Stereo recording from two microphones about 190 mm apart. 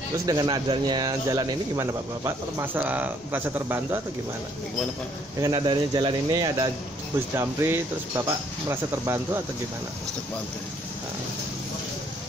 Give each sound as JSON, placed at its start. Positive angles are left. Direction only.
{"t": 0.3, "sound": "speech", "side_deg": -20}
{"t": 5.4, "sound": "speech", "side_deg": -25}